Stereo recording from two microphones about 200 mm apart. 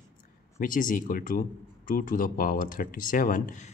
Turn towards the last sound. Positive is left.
turn(degrees=40)  # may be behind; listen again after turning